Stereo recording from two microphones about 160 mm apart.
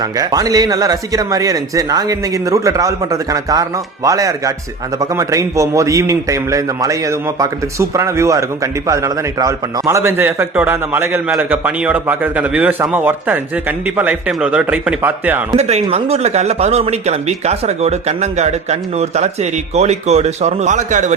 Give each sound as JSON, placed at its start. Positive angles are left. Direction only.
{"t": 0.0, "sound": "a man's voice", "side_deg": -25}
{"t": 15.5, "sound": "speech", "side_deg": -40}